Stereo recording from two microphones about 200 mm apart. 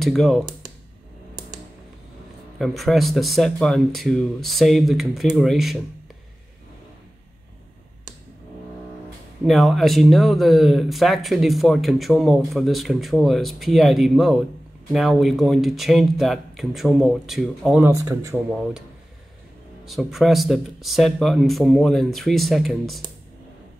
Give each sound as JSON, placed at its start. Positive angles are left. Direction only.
{"t": 0.0, "sound": "speech", "side_deg": 0}
{"t": 2.6, "sound": "speech", "side_deg": 0}
{"t": 9.4, "sound": "speech", "side_deg": 0}
{"t": 17.9, "sound": "speech", "side_deg": -15}
{"t": 19.8, "sound": "speech", "side_deg": 0}